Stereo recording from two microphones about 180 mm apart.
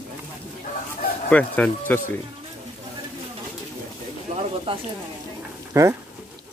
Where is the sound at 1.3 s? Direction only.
5° left (ahead or behind).